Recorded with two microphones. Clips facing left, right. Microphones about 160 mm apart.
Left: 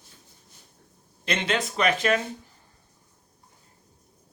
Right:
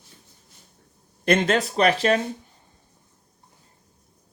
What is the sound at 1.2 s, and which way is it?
Speech, 45° right (ahead or behind).